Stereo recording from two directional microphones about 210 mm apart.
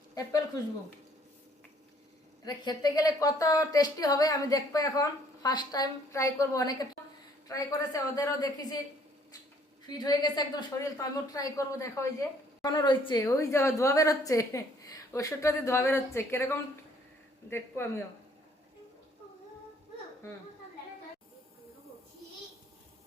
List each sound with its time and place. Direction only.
0.1 s speech: 15° left (ahead or behind)
2.4 s speech: 20° left (ahead or behind)
9.8 s speech: 20° left (ahead or behind)